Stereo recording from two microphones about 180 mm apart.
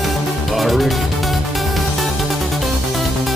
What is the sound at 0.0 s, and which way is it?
Music, centre (ahead or behind).